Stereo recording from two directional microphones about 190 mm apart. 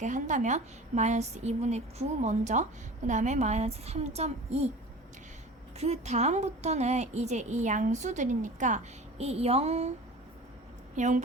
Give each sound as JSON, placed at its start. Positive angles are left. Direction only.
{"t": 0.0, "sound": "a woman's voice", "side_deg": -40}
{"t": 5.7, "sound": "a woman's voice", "side_deg": -35}
{"t": 10.9, "sound": "a woman's voice", "side_deg": -40}